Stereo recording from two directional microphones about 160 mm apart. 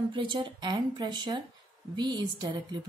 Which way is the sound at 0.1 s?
30° right (ahead or behind).